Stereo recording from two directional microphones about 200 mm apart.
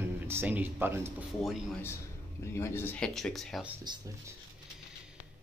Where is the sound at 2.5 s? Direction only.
10° left (ahead or behind).